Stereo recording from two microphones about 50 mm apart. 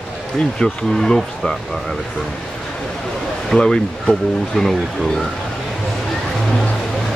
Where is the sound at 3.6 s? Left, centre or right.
Centre.